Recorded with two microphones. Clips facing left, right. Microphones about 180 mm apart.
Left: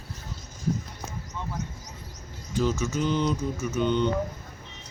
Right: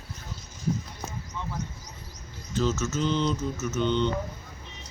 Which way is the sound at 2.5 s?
15° left (ahead or behind).